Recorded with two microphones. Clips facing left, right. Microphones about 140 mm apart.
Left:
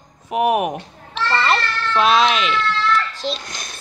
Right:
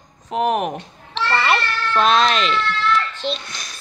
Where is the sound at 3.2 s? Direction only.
40° left (ahead or behind).